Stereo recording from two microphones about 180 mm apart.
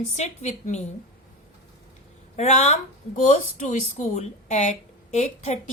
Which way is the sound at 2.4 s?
40° left (ahead or behind).